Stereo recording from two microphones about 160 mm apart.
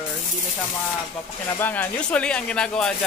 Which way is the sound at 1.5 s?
10° left (ahead or behind).